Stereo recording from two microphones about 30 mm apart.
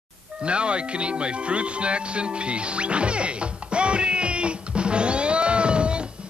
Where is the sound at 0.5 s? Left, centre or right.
Right.